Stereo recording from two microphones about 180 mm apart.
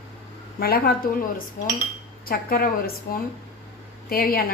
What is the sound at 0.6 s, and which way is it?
Speech, 55° left (ahead or behind).